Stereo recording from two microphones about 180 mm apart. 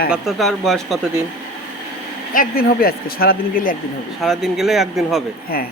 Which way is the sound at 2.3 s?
55° left (ahead or behind).